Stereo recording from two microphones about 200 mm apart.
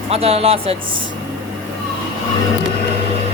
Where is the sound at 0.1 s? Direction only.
30° right (ahead or behind).